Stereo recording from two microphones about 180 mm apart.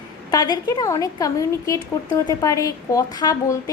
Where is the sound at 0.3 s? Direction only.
20° left (ahead or behind).